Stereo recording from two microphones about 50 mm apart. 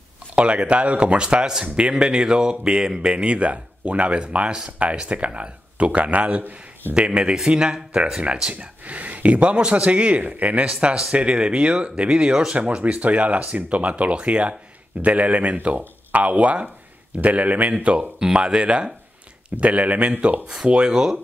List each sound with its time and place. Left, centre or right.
0.4 s speech: right
10.7 s speech: centre
12.5 s speech: right; by 21.2 s centre